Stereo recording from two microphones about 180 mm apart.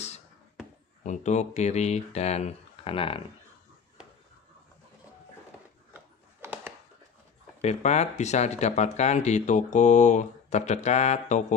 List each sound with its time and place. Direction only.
1.0 s speech: 40° left (ahead or behind)
6.4 s a sound: 10° right (ahead or behind)
7.6 s speech: 40° left (ahead or behind)